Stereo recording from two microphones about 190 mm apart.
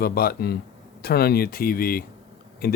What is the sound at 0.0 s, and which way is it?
Speech, 55° left (ahead or behind).